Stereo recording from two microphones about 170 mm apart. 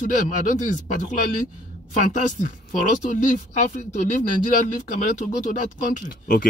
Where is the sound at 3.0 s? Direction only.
50° left (ahead or behind).